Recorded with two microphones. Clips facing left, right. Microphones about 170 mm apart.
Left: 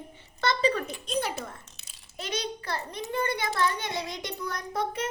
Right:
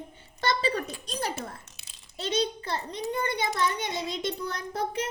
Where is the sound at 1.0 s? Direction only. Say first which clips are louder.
Left 3 dB; 40° right (ahead or behind).